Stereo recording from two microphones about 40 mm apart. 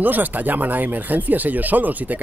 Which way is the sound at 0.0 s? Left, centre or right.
Right.